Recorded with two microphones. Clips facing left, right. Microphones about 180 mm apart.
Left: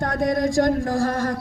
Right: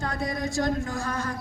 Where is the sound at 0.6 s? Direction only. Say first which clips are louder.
Left 7 dB; 60° left (ahead or behind).